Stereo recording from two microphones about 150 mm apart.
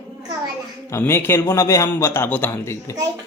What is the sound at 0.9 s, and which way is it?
A man's voice, 15° left (ahead or behind).